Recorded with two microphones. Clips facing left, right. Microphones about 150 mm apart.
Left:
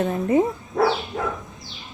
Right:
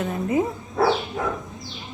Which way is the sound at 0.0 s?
35° left (ahead or behind).